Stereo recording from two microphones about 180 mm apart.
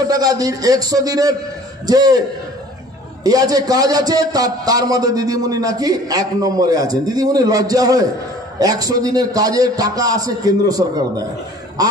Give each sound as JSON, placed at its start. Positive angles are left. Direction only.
{"t": 0.0, "sound": "a man's voice", "side_deg": -20}
{"t": 3.3, "sound": "a man's voice", "side_deg": -20}